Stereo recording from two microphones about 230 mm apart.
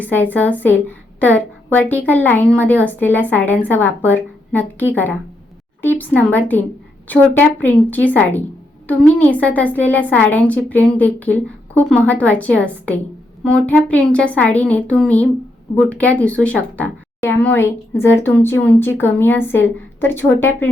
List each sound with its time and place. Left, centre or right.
0.0 s a woman's voice: centre